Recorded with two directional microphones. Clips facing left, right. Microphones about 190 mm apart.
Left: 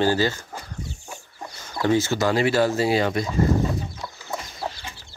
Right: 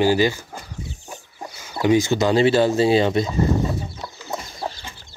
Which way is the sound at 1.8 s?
15° right (ahead or behind).